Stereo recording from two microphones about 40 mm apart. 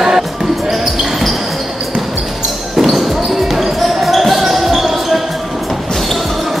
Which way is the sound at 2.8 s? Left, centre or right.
Centre.